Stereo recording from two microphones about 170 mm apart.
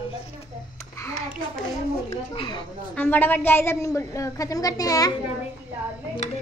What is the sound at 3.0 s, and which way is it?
A woman's voice, 10° left (ahead or behind).